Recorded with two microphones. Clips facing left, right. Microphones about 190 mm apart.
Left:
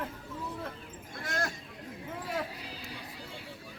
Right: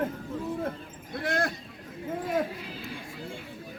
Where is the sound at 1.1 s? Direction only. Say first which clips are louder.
Right 7 dB; 55° right (ahead or behind).